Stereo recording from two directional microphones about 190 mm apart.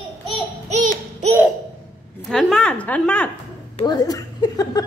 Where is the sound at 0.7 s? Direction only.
40° right (ahead or behind).